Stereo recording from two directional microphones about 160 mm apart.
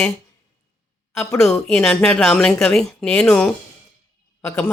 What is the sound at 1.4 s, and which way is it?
A woman's voice, 5° left (ahead or behind).